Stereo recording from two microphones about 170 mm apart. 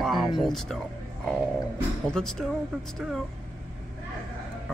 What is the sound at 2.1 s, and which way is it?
Speech, 5° left (ahead or behind).